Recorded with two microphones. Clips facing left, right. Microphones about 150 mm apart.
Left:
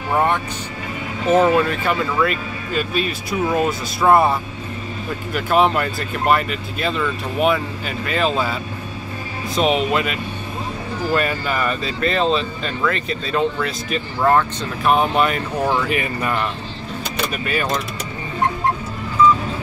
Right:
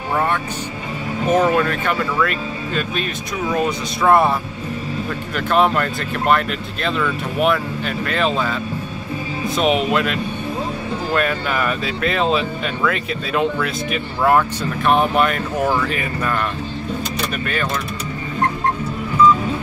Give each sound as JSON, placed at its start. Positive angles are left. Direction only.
{"t": 0.1, "sound": "speech", "side_deg": 15}
{"t": 1.3, "sound": "speech", "side_deg": 5}
{"t": 9.6, "sound": "speech", "side_deg": 0}
{"t": 11.1, "sound": "speech", "side_deg": 0}
{"t": 15.7, "sound": "speech", "side_deg": 15}